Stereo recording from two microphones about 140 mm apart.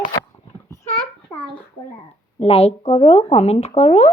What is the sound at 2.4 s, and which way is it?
Speech, 45° left (ahead or behind).